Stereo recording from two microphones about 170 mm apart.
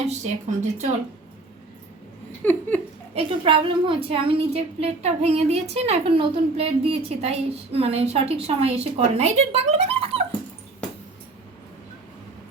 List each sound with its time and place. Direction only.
0.1 s speech: 45° right (ahead or behind)
2.4 s a sound: 10° left (ahead or behind)
3.2 s a woman's voice: 30° right (ahead or behind)